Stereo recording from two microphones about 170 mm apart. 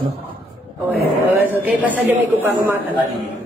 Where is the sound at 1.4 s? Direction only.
10° right (ahead or behind).